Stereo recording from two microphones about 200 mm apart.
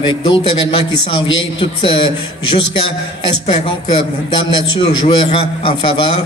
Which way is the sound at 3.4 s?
30° left (ahead or behind).